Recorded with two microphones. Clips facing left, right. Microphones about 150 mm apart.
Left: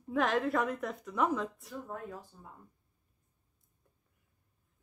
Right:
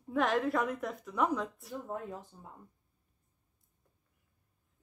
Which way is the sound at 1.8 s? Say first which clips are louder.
Right 3 dB; 20° right (ahead or behind).